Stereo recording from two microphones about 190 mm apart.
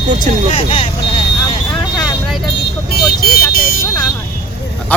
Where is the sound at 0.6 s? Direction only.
30° left (ahead or behind).